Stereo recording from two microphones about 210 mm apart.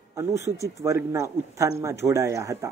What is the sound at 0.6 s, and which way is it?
Speech, 15° right (ahead or behind).